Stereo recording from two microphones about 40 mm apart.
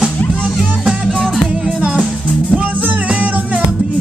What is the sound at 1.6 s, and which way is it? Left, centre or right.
Music, right.